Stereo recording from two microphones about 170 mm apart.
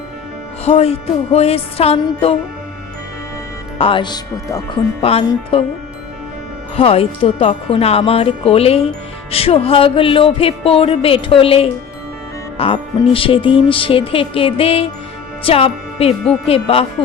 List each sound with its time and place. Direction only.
0.6 s music: 35° left (ahead or behind)
3.8 s music: 30° left (ahead or behind)
6.7 s music: 35° left (ahead or behind)
15.4 s speech: 35° left (ahead or behind)
16.5 s music: 35° left (ahead or behind)